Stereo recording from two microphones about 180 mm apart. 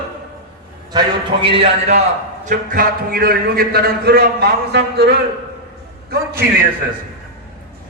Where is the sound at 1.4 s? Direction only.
30° right (ahead or behind).